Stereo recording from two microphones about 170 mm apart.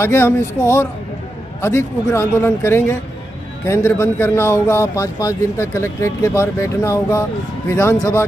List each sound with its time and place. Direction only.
0.0 s a man's voice: 15° left (ahead or behind)